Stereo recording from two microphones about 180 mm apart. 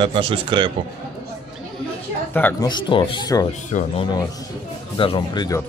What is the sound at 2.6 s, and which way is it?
Speech, 25° left (ahead or behind).